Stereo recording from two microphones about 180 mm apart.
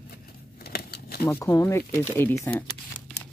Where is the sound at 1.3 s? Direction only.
15° left (ahead or behind).